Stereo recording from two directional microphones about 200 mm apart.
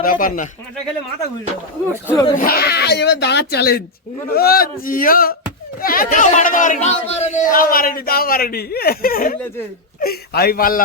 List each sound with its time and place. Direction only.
0.0 s speech: 45° left (ahead or behind)
2.0 s speech: 15° left (ahead or behind)
2.4 s speech: 50° left (ahead or behind)